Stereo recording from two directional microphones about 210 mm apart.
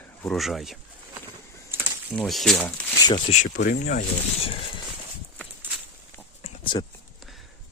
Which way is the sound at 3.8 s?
35° left (ahead or behind).